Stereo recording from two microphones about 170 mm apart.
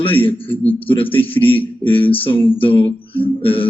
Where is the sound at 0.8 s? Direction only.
30° left (ahead or behind).